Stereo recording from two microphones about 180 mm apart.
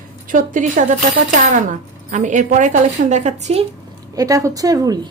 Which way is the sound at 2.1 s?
45° right (ahead or behind).